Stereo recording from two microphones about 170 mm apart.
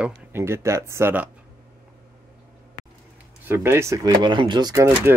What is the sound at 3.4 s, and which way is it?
Speech, 15° right (ahead or behind).